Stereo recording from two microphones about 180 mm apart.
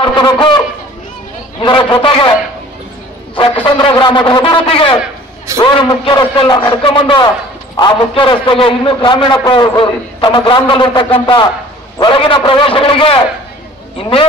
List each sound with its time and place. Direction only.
0.0 s fowl: 25° left (ahead or behind)
1.6 s a man's voice: 25° left (ahead or behind)
3.3 s a man's voice: 30° left (ahead or behind)